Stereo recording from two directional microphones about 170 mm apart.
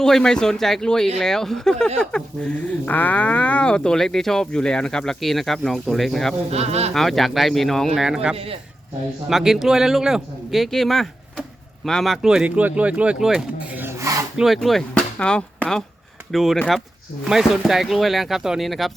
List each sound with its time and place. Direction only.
0.0 s speech: 5° left (ahead or behind)
6.5 s speech: 40° right (ahead or behind)
6.9 s speech: centre (ahead or behind); by 14.3 s 20° right (ahead or behind)
14.3 s speech: centre (ahead or behind)